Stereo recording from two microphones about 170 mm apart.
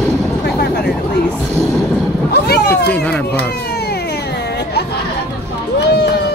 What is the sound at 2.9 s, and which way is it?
Speech, 10° left (ahead or behind).